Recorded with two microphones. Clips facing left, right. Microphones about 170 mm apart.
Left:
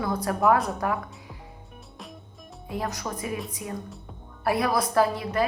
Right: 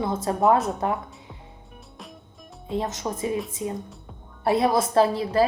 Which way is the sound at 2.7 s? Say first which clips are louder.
Right 4 dB; 25° right (ahead or behind).